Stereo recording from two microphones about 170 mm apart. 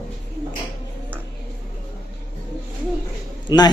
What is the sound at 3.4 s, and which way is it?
Speech, 25° left (ahead or behind).